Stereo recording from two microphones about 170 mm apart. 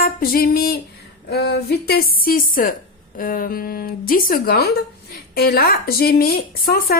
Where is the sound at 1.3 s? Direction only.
70° left (ahead or behind).